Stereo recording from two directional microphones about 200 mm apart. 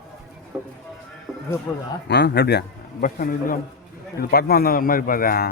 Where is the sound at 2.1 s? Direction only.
55° left (ahead or behind).